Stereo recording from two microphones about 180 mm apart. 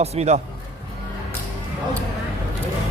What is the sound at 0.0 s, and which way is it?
Speech, 35° right (ahead or behind).